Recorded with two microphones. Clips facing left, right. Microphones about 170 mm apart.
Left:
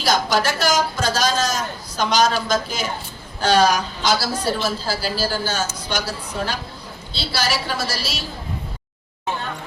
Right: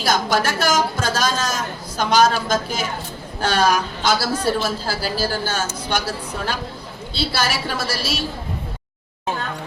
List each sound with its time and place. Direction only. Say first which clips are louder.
0.0 s a woman's voice: even; 50° right (ahead or behind)